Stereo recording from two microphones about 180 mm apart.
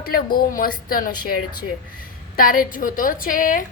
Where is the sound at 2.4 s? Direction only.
50° left (ahead or behind).